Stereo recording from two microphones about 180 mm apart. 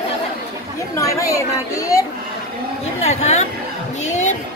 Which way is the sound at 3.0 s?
40° left (ahead or behind).